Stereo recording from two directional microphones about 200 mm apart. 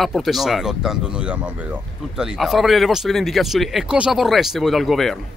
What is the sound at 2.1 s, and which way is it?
Speech, centre (ahead or behind).